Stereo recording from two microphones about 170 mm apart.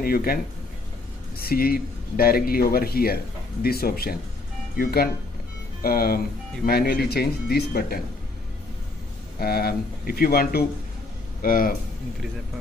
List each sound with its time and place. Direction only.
0.0 s speech: 60° left (ahead or behind)
1.4 s speech: 60° left (ahead or behind)
9.4 s speech: 65° left (ahead or behind)